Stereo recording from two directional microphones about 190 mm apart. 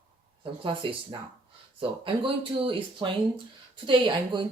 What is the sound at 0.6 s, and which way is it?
Speech, 25° right (ahead or behind).